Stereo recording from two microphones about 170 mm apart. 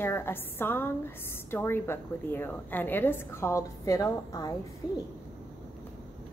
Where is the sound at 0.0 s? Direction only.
15° left (ahead or behind).